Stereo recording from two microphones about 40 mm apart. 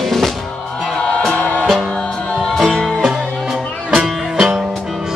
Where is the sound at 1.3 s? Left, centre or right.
Left.